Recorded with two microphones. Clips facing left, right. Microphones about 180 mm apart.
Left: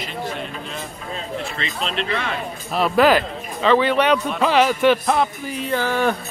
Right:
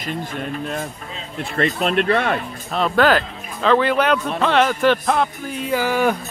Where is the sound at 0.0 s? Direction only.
50° right (ahead or behind).